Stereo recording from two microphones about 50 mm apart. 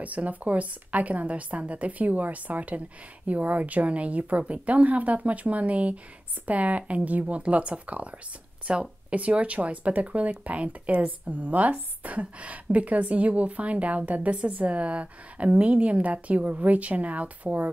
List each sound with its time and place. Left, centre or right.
0.0 s a woman's voice: right